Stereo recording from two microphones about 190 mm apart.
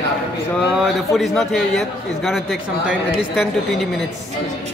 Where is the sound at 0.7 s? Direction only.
Centre (ahead or behind).